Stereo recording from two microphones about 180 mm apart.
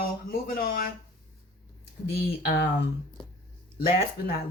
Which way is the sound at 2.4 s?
70° left (ahead or behind).